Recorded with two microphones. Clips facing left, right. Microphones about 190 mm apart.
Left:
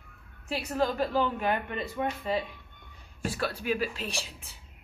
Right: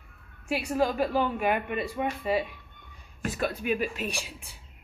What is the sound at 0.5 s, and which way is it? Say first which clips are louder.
A woman's voice: right 2 dB; 15° right (ahead or behind).